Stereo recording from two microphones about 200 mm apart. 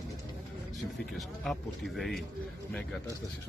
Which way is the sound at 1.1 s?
Centre (ahead or behind).